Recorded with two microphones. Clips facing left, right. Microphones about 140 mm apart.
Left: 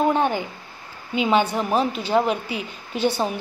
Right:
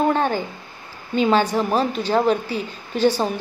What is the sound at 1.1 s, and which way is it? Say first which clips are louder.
A woman's voice: right 2 dB; 10° left (ahead or behind).